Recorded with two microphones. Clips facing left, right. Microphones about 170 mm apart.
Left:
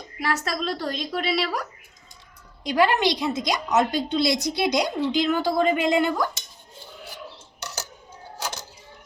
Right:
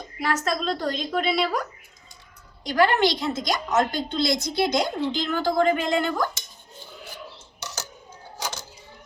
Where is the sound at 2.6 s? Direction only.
15° left (ahead or behind).